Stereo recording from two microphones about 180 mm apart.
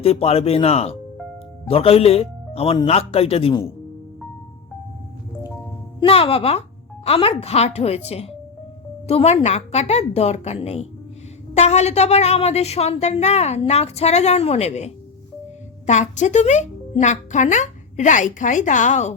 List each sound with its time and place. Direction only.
0.0 s a woman's voice: 35° left (ahead or behind)
6.0 s a woman's voice: 30° left (ahead or behind)